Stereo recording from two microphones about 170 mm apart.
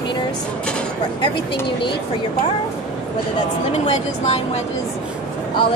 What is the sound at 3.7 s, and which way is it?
Speech, 40° left (ahead or behind).